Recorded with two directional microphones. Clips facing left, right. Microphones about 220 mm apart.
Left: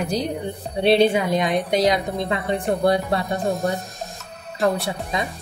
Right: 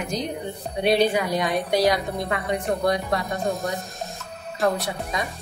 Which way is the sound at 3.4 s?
Centre (ahead or behind).